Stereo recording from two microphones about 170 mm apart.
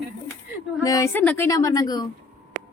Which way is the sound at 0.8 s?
20° left (ahead or behind).